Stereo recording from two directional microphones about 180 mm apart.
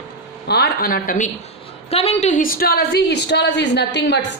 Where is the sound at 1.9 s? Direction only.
35° left (ahead or behind).